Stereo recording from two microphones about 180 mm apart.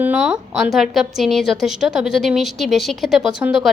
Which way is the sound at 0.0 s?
5° right (ahead or behind).